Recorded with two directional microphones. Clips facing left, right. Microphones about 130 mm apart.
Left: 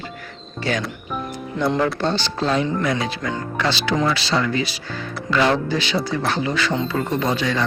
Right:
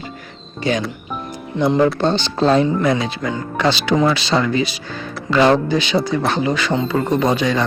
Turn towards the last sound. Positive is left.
turn(degrees=-20)  # may be behind; listen again after turning